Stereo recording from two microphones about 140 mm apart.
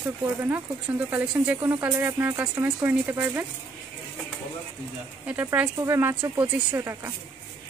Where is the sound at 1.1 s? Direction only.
10° right (ahead or behind).